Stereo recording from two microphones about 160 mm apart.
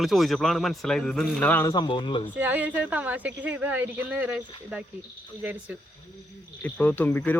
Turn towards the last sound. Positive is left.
turn(degrees=10)  # may be behind; listen again after turning